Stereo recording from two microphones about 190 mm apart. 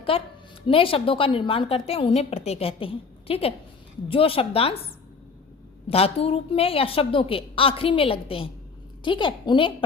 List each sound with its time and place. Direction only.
0.7 s a woman's voice: 30° left (ahead or behind)
5.9 s a woman's voice: 30° left (ahead or behind)